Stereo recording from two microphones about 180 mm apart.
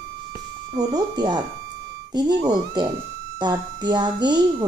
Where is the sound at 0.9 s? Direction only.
25° right (ahead or behind).